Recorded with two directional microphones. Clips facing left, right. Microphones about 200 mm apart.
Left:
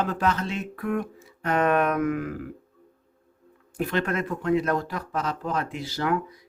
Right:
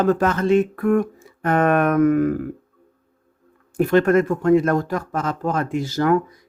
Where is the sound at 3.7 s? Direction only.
45° right (ahead or behind).